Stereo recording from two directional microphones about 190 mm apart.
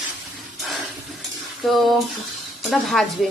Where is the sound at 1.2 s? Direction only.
Centre (ahead or behind).